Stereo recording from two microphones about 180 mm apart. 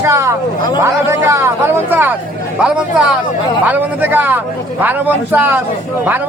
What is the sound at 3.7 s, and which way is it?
A man's voice, 10° right (ahead or behind).